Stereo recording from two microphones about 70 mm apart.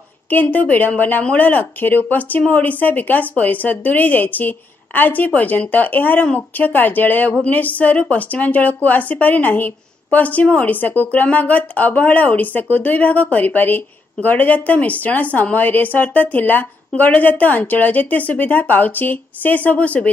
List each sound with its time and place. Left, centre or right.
0.3 s speech: left